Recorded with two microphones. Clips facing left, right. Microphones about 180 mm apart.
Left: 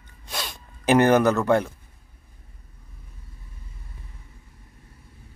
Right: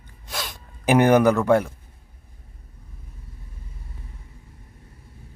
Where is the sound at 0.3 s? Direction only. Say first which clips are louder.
Right 1 dB; centre (ahead or behind).